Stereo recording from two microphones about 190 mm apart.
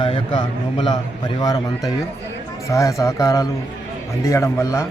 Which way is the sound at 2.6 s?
15° left (ahead or behind).